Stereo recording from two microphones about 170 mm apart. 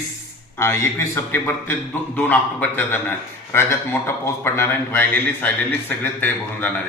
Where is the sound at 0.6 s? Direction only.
15° left (ahead or behind).